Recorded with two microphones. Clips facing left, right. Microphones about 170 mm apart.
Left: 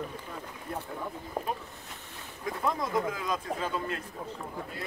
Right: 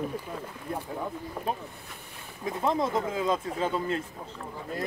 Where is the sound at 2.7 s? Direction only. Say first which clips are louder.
Right 3 dB; 25° right (ahead or behind).